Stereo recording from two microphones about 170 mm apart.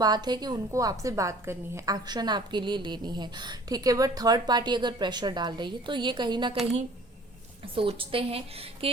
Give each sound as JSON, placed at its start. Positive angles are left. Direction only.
{"t": 0.0, "sound": "a woman's voice", "side_deg": -25}
{"t": 7.6, "sound": "a woman's voice", "side_deg": -30}